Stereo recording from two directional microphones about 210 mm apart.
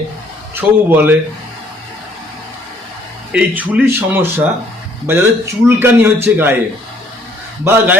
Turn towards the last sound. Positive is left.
turn(degrees=-10)  # may be behind; listen again after turning